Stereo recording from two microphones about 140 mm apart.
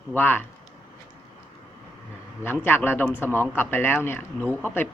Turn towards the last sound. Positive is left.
turn(degrees=15)  # may be behind; listen again after turning